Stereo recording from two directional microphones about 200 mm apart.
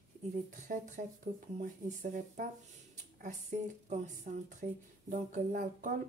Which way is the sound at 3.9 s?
35° right (ahead or behind).